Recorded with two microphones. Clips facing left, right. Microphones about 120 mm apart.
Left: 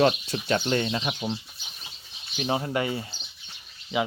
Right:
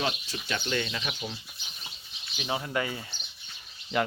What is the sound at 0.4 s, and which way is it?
Speech, 35° left (ahead or behind).